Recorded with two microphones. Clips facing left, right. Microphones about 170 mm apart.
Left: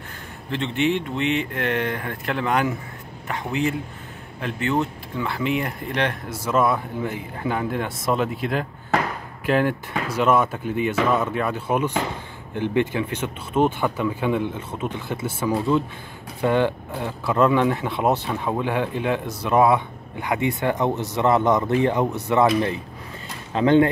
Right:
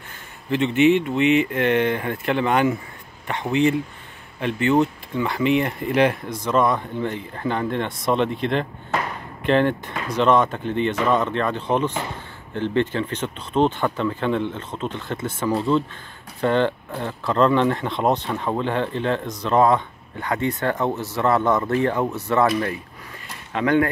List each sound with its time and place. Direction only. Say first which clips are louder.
0.5 s speech: right 6 dB; 5° right (ahead or behind)
6.2 s speech: right 1 dB; 5° left (ahead or behind)
23.5 s speech: left 3 dB; 25° left (ahead or behind)